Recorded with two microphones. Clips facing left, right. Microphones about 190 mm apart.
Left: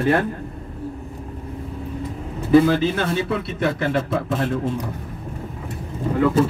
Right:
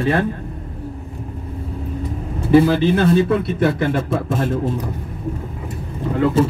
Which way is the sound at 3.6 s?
55° right (ahead or behind).